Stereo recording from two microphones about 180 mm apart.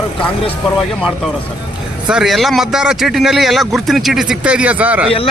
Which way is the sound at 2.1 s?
Centre (ahead or behind).